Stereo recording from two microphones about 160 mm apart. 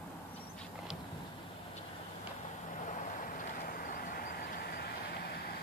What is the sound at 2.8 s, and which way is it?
Vehicle, 55° left (ahead or behind).